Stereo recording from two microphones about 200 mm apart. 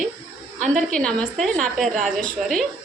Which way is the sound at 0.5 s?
40° right (ahead or behind).